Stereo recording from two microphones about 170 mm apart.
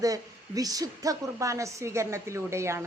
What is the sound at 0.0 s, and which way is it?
A woman's voice, 20° right (ahead or behind).